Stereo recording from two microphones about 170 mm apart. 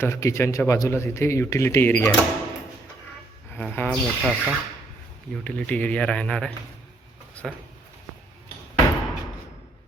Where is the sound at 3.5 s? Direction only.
10° left (ahead or behind).